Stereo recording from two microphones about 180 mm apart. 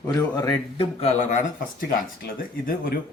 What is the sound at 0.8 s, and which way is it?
Speech, 40° left (ahead or behind).